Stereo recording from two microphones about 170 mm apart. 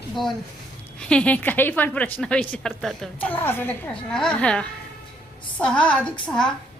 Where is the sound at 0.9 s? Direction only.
5° left (ahead or behind).